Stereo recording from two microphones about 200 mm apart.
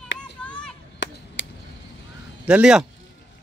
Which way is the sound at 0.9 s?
65° left (ahead or behind).